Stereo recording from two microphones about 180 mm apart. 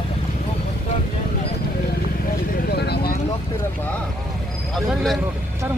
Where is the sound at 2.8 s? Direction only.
60° left (ahead or behind).